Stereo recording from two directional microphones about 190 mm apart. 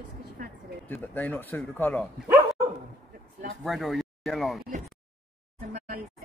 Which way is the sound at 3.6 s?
Centre (ahead or behind).